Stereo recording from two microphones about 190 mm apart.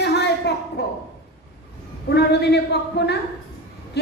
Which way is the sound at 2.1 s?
60° left (ahead or behind).